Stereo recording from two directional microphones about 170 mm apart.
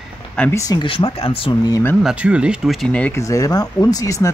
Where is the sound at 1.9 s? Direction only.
5° right (ahead or behind).